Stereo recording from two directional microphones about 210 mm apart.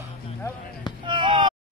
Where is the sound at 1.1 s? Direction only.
25° right (ahead or behind).